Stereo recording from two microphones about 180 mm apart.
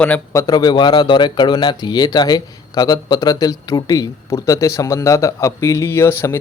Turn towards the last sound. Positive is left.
turn(degrees=15)  # may be behind; listen again after turning